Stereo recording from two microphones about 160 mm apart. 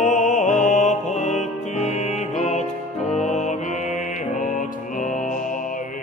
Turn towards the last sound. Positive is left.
turn(degrees=55)  # may be behind; listen again after turning